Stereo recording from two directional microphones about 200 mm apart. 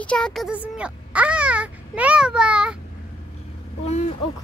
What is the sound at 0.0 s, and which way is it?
Speech, 5° left (ahead or behind).